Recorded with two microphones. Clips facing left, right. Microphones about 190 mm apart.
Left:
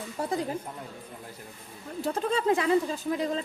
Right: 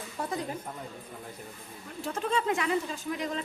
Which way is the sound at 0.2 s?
30° left (ahead or behind).